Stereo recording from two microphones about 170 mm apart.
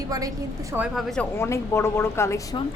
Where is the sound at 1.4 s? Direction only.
15° left (ahead or behind).